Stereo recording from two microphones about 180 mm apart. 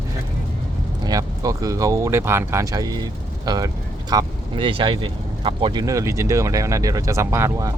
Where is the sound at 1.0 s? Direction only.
20° right (ahead or behind).